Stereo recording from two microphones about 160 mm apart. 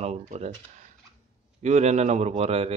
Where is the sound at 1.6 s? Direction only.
45° right (ahead or behind).